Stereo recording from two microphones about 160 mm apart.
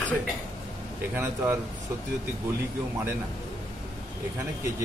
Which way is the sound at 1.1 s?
15° right (ahead or behind).